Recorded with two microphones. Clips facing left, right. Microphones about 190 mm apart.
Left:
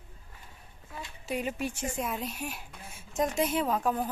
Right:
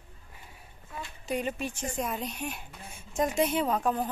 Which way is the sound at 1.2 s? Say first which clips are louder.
Right 1 dB; 5° left (ahead or behind).